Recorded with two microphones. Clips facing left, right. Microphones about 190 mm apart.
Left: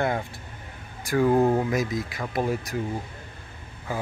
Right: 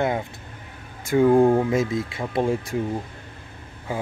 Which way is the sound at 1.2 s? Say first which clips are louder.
Right 4 dB; 10° right (ahead or behind).